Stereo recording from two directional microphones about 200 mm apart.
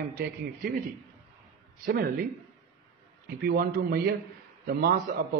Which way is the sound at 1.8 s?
45° right (ahead or behind).